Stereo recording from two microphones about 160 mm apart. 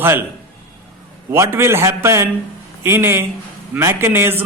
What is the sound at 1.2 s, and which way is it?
A man's voice, 15° right (ahead or behind).